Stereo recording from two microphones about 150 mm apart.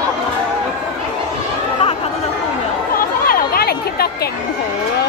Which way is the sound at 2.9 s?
75° left (ahead or behind).